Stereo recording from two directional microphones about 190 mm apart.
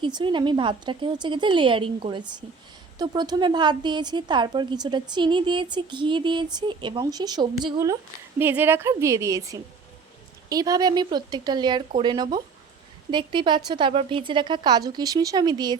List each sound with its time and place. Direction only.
0.0 s a woman's voice: 25° right (ahead or behind)